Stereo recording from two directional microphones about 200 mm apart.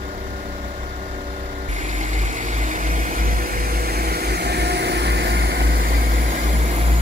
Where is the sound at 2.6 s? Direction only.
40° right (ahead or behind).